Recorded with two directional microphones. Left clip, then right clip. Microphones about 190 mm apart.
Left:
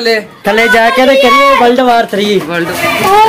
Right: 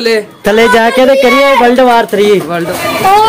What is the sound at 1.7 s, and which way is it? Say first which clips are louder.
Speech: right 2 dB; 30° right (ahead or behind).